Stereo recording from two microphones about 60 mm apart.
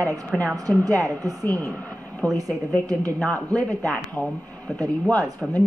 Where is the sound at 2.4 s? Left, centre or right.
Right.